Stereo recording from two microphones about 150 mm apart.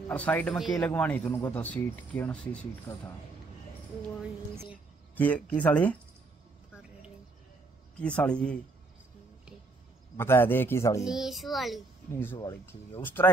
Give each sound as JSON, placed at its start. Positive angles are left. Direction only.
{"t": 0.1, "sound": "speech", "side_deg": 10}
{"t": 5.1, "sound": "speech", "side_deg": 10}
{"t": 8.0, "sound": "speech", "side_deg": 10}
{"t": 10.1, "sound": "speech", "side_deg": 15}
{"t": 11.1, "sound": "a child's voice", "side_deg": -5}
{"t": 12.1, "sound": "speech", "side_deg": 15}